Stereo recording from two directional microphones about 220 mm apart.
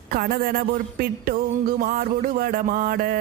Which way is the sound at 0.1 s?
40° right (ahead or behind).